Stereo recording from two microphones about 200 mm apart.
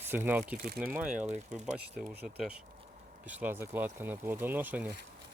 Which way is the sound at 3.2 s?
10° right (ahead or behind).